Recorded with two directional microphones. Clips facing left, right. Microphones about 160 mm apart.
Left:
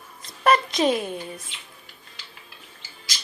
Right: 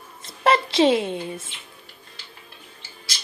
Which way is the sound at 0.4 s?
30° right (ahead or behind).